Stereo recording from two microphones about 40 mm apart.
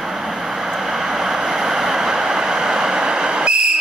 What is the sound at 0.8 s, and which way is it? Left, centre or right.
Vehicle, centre.